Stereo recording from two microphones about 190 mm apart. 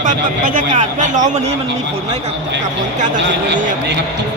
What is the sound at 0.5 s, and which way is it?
Speech, 40° right (ahead or behind).